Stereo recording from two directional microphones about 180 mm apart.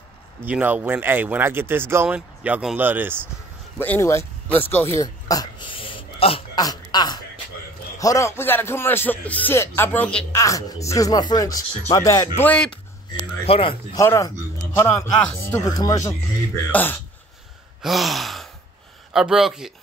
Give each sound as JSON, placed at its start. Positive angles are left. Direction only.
{"t": 0.4, "sound": "speech", "side_deg": -10}
{"t": 3.8, "sound": "speech", "side_deg": 10}
{"t": 10.4, "sound": "speech", "side_deg": 20}
{"t": 12.4, "sound": "speech", "side_deg": 5}
{"t": 13.5, "sound": "speech", "side_deg": 30}
{"t": 13.9, "sound": "speech", "side_deg": 15}
{"t": 17.8, "sound": "gasp", "side_deg": 0}